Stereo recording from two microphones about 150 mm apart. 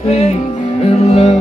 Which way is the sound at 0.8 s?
50° left (ahead or behind).